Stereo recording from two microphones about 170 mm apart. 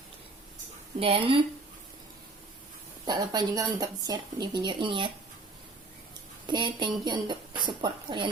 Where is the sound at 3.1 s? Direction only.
20° right (ahead or behind).